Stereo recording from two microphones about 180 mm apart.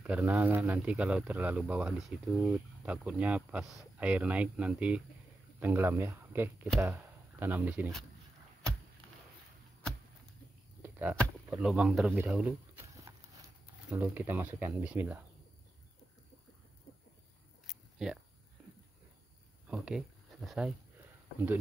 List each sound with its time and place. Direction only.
0.0 s speech: 5° right (ahead or behind)
10.8 s a sound: 10° right (ahead or behind)
11.1 s speech: 5° right (ahead or behind)
12.9 s clip-clop: 20° right (ahead or behind)
13.8 s speech: 10° right (ahead or behind)
17.6 s a sound: centre (ahead or behind)
19.7 s speech: 5° right (ahead or behind)